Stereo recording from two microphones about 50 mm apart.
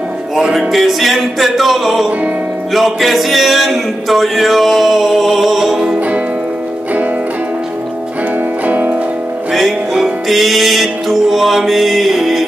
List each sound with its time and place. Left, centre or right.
0.4 s music: centre
5.9 s music: right
8.6 s music: right
9.5 s music: centre